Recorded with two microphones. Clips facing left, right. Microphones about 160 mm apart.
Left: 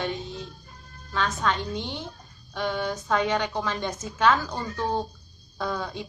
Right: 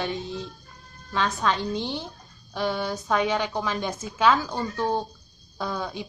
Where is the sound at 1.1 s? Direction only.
15° right (ahead or behind).